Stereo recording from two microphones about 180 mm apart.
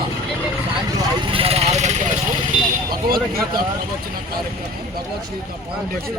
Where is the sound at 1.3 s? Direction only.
30° right (ahead or behind).